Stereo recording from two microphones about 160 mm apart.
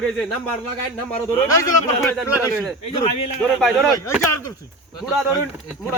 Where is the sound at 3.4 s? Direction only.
Centre (ahead or behind).